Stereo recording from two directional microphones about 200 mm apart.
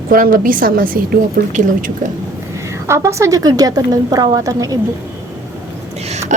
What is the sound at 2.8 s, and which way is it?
A woman's voice, 15° right (ahead or behind).